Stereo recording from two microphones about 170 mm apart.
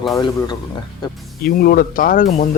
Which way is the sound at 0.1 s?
25° left (ahead or behind).